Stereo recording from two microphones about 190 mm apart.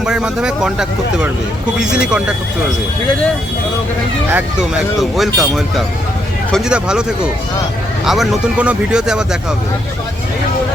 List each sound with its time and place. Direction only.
0.0 s speech: 5° right (ahead or behind)
4.9 s speech: centre (ahead or behind)
8.0 s speech: centre (ahead or behind)